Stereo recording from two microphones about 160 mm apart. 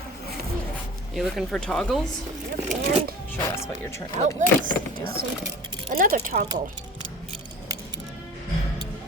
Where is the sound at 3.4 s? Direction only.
15° left (ahead or behind).